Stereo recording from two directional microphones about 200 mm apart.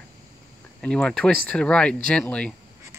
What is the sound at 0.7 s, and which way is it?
Speech, 5° left (ahead or behind).